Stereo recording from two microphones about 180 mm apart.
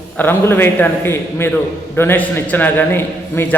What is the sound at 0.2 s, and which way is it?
A man's voice, 10° left (ahead or behind).